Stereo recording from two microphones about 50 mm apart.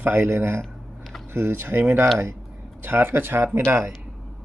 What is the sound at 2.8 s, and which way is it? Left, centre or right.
Speech, right.